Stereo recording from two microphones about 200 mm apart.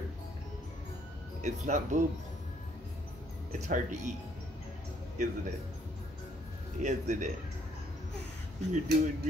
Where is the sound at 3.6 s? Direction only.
35° right (ahead or behind).